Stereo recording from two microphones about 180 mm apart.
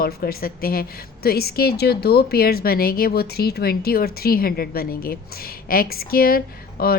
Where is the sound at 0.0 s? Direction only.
55° left (ahead or behind).